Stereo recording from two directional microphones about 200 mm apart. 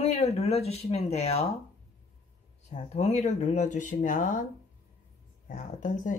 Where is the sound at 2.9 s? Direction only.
35° left (ahead or behind).